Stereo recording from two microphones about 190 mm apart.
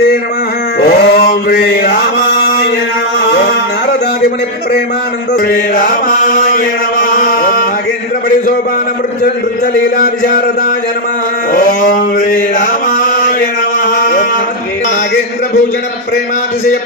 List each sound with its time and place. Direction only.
0.7 s male singing: 60° left (ahead or behind)
3.2 s music: 60° left (ahead or behind)
5.5 s mantra: 50° left (ahead or behind)
7.0 s music: 50° left (ahead or behind)
11.5 s chant: 50° left (ahead or behind)
13.8 s a sound: 50° left (ahead or behind)